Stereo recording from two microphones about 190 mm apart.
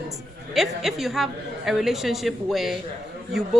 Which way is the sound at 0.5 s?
Centre (ahead or behind).